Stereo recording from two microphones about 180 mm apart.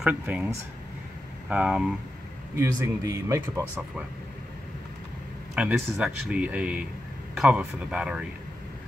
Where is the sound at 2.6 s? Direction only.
15° right (ahead or behind).